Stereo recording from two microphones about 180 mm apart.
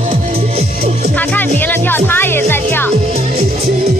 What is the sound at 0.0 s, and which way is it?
Music, 35° right (ahead or behind).